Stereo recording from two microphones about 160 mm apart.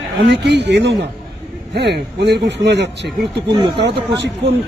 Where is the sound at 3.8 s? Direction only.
90° right.